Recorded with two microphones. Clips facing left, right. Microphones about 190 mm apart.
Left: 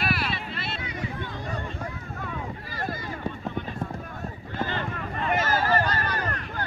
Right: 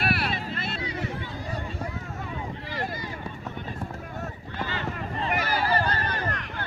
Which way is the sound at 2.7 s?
50° left (ahead or behind).